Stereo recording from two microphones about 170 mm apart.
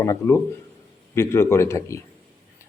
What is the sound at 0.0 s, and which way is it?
A man's voice, 15° left (ahead or behind).